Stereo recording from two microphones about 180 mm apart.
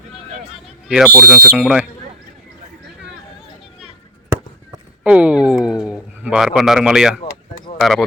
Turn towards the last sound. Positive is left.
turn(degrees=0)  # may be behind; listen again after turning